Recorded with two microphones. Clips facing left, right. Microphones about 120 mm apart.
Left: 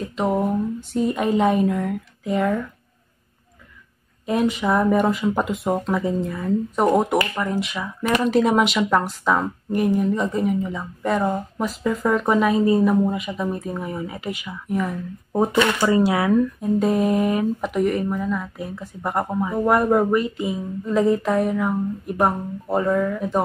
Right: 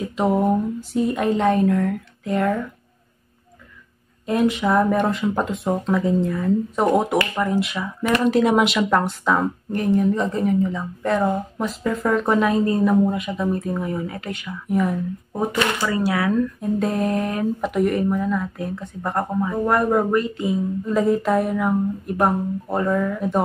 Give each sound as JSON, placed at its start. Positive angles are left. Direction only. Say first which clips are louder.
{"t": 0.1, "sound": "speech", "louder": "right 2 dB", "side_deg": -5}
{"t": 4.3, "sound": "speech", "louder": "right 1 dB", "side_deg": 0}
{"t": 15.8, "sound": "speech", "louder": "left 3 dB", "side_deg": 20}
{"t": 16.8, "sound": "speech", "louder": "left 3 dB", "side_deg": 5}